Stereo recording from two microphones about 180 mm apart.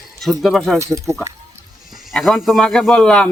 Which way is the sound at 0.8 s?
15° right (ahead or behind).